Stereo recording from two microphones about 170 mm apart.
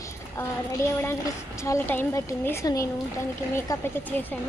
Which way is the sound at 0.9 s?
15° left (ahead or behind).